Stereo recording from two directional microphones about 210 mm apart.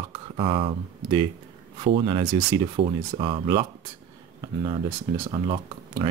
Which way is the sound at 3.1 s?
25° right (ahead or behind).